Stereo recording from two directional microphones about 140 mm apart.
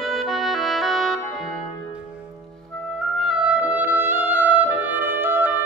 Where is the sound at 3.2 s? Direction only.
5° right (ahead or behind).